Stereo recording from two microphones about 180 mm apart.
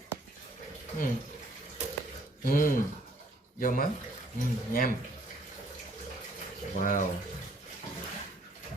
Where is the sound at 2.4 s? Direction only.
50° left (ahead or behind).